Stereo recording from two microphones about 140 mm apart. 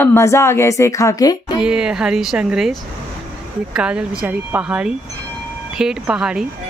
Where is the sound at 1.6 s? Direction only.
5° right (ahead or behind).